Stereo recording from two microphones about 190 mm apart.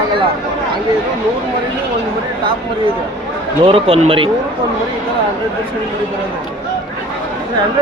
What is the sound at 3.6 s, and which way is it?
Speech, 30° right (ahead or behind).